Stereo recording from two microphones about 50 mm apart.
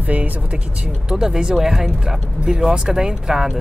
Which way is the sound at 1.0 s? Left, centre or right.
Centre.